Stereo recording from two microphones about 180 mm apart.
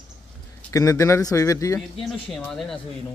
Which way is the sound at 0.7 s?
20° left (ahead or behind).